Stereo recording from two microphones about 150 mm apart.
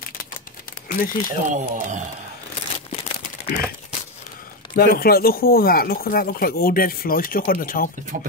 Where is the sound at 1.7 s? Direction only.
55° right (ahead or behind).